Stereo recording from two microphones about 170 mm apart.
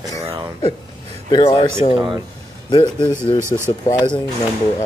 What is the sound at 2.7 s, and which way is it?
Speech, 25° left (ahead or behind).